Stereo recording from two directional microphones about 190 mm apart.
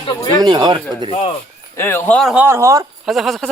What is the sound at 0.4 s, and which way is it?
Speech, 25° right (ahead or behind).